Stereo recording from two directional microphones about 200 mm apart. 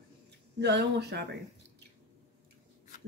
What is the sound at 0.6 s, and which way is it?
Speech, 55° right (ahead or behind).